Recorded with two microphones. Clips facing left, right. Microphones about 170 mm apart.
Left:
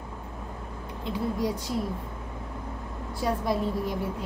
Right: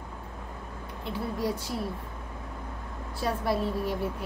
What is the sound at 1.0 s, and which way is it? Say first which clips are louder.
Speech: left 2 dB; 15° left (ahead or behind).